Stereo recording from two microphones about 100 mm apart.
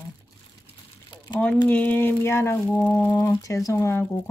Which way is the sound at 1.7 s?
15° left (ahead or behind).